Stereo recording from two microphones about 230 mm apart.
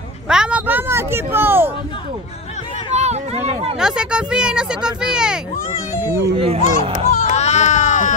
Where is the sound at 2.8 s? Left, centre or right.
Right.